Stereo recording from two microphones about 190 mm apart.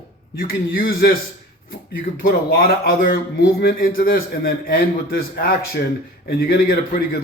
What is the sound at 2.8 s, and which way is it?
A man's voice, 55° left (ahead or behind).